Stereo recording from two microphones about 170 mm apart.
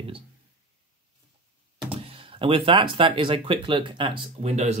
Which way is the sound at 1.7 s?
35° right (ahead or behind).